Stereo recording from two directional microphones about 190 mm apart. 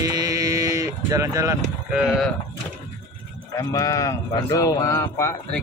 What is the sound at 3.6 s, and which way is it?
Speech, 15° left (ahead or behind).